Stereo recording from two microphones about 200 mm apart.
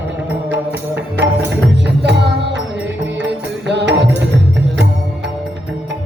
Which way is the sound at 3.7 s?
60° right (ahead or behind).